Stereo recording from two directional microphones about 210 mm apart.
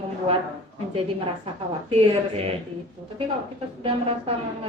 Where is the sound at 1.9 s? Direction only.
30° right (ahead or behind).